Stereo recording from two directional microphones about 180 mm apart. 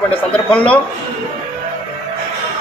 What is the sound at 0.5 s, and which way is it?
Speech, 5° left (ahead or behind).